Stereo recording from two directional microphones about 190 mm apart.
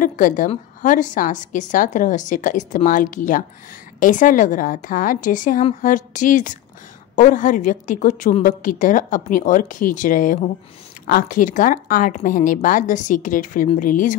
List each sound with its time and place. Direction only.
0.0 s a woman's voice: 45° left (ahead or behind)